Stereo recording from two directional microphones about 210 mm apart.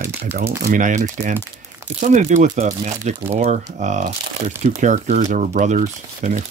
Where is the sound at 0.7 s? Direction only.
40° right (ahead or behind).